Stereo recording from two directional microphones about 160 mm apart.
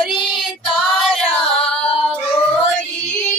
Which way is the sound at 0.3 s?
Centre (ahead or behind).